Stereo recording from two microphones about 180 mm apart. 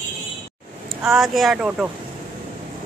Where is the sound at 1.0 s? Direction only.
Centre (ahead or behind).